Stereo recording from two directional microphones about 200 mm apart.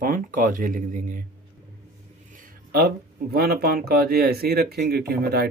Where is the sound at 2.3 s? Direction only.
50° right (ahead or behind).